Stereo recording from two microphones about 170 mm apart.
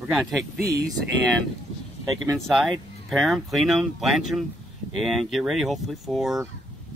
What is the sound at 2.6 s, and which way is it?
Speech, centre (ahead or behind).